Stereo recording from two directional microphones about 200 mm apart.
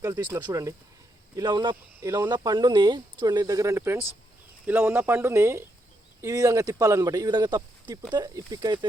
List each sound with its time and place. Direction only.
0.0 s speech: 15° right (ahead or behind)